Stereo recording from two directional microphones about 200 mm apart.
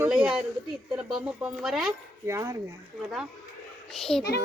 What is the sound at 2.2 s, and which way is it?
Speech, 15° right (ahead or behind).